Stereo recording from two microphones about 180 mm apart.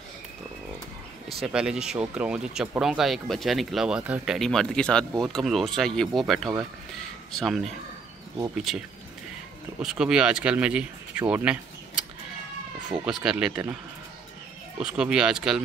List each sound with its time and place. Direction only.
1.4 s speech: 5° right (ahead or behind)
13.0 s speech: 5° right (ahead or behind)
14.8 s speech: 5° right (ahead or behind)